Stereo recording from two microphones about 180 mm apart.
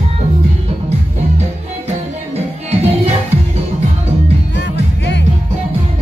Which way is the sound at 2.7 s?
35° right (ahead or behind).